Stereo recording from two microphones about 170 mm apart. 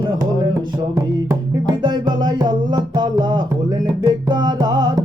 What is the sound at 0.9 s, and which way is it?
Music, 25° right (ahead or behind).